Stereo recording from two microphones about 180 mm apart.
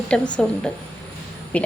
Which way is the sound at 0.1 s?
5° left (ahead or behind).